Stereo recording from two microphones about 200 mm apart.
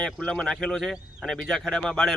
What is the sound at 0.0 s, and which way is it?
Speech, 5° left (ahead or behind).